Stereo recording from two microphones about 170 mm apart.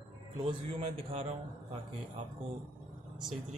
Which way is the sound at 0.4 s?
30° right (ahead or behind).